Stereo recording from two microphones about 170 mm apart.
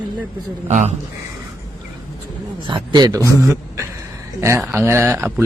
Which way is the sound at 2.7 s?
25° right (ahead or behind).